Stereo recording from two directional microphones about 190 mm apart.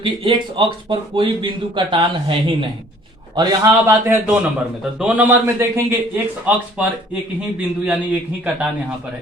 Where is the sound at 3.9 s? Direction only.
15° right (ahead or behind).